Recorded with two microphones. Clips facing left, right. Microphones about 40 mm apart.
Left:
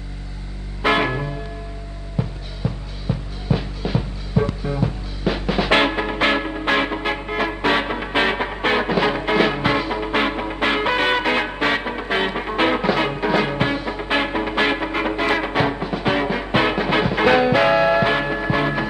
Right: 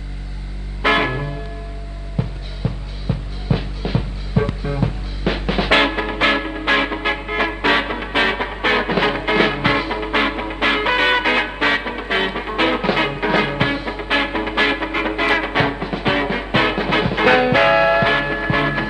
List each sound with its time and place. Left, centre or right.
0.8 s music: centre
2.6 s music: right
4.3 s music: right
5.6 s music: right
7.9 s music: centre
12.9 s music: right
15.1 s music: right